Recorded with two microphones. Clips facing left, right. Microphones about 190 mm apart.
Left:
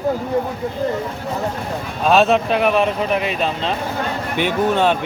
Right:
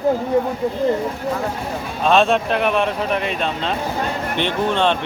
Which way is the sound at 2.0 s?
5° left (ahead or behind).